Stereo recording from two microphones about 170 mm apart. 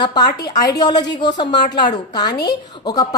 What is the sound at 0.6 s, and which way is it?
A woman's voice, 25° left (ahead or behind).